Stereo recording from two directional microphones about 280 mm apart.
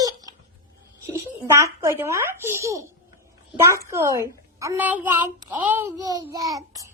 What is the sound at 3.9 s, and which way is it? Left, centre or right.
Speech, centre.